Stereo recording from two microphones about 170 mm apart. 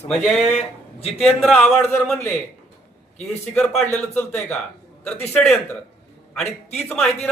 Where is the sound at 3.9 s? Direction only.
10° left (ahead or behind).